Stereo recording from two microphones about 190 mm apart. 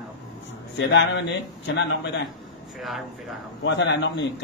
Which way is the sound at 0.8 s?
75° left (ahead or behind).